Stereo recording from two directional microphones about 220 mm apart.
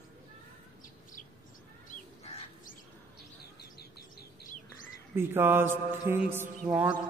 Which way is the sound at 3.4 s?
45° left (ahead or behind).